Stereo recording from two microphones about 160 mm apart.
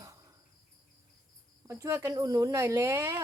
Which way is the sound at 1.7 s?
20° right (ahead or behind).